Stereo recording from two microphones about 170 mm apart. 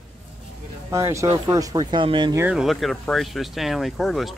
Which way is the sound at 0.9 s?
15° right (ahead or behind).